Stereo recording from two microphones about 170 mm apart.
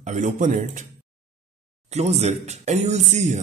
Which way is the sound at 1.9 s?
40° right (ahead or behind).